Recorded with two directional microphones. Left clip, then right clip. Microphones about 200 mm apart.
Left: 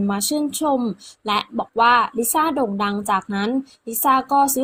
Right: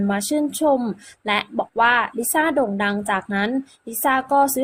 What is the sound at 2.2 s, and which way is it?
A woman's voice, 15° left (ahead or behind).